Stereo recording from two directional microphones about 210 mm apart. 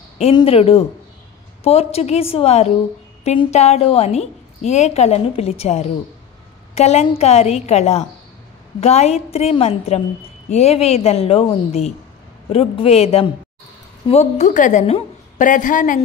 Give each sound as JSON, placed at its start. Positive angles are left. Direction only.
{"t": 0.2, "sound": "a woman's voice", "side_deg": 25}